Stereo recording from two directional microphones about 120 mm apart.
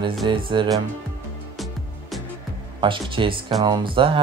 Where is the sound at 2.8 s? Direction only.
45° right (ahead or behind).